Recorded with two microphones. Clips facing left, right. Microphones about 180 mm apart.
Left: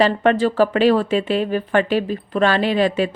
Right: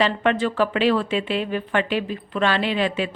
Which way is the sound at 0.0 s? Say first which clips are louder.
Left 5 dB; 40° left (ahead or behind).